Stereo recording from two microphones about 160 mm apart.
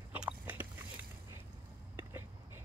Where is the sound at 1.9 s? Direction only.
15° right (ahead or behind).